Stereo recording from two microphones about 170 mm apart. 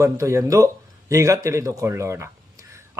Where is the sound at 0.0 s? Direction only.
15° right (ahead or behind).